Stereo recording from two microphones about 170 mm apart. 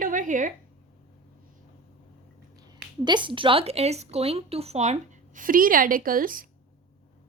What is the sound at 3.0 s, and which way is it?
A woman's voice, 25° right (ahead or behind).